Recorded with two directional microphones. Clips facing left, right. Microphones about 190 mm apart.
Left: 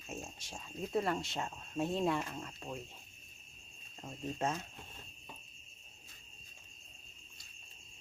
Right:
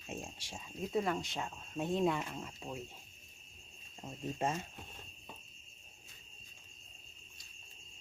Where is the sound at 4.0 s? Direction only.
10° right (ahead or behind).